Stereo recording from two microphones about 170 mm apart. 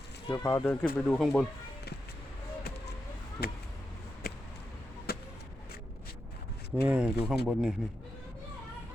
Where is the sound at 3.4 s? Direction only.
65° left (ahead or behind).